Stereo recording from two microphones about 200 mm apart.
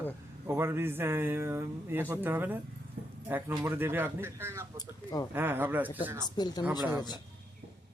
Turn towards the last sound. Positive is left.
turn(degrees=20)  # may be behind; listen again after turning